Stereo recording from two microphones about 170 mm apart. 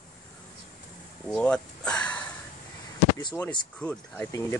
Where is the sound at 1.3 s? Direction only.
5° left (ahead or behind).